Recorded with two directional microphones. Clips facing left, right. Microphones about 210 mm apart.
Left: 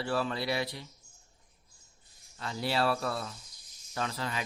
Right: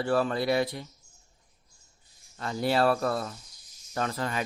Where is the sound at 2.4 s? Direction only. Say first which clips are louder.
Right 5 dB; 50° right (ahead or behind).